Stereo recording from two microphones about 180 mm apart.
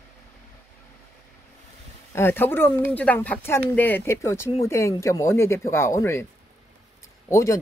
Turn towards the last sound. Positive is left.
turn(degrees=15)  # may be behind; listen again after turning